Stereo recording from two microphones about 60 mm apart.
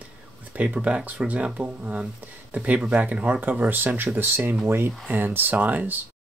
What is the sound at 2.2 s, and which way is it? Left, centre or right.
Speech, right.